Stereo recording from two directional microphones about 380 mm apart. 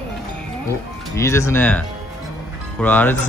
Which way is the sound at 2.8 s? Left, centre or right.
Centre.